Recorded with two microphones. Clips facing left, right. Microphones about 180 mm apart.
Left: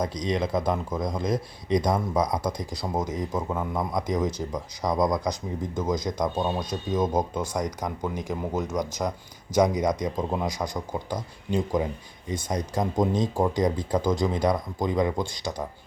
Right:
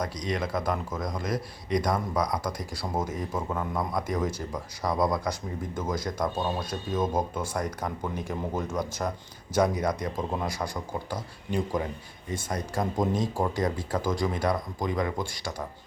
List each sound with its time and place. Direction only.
0.0 s speech: 20° left (ahead or behind)